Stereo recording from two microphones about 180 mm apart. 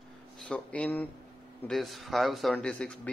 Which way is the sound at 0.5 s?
5° left (ahead or behind).